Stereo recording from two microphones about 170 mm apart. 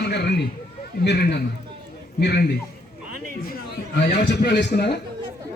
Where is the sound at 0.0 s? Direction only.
75° left (ahead or behind).